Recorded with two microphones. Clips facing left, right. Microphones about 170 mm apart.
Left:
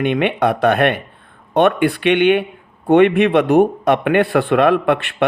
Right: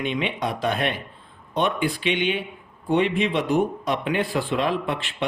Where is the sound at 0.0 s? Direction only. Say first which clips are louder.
Left 9 dB; 60° left (ahead or behind).